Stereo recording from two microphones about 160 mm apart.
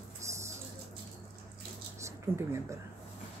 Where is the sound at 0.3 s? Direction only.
20° right (ahead or behind).